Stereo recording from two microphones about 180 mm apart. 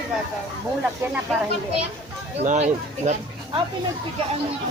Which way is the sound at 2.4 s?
40° right (ahead or behind).